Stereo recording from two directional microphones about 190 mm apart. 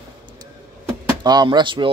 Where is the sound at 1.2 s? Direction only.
20° right (ahead or behind).